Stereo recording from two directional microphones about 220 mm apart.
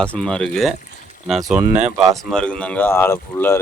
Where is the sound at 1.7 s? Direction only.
30° right (ahead or behind).